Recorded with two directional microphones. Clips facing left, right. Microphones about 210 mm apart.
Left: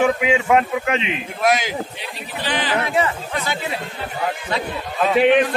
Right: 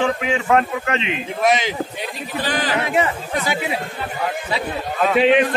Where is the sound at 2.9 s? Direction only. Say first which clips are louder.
Right 1 dB; 20° right (ahead or behind).